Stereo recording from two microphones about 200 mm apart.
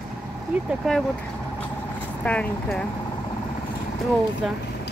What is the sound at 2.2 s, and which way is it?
Speech, 5° left (ahead or behind).